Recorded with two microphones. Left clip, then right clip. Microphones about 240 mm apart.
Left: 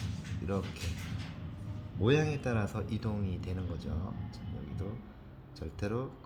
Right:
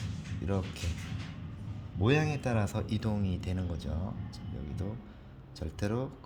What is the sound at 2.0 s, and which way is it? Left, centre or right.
A man's voice, right.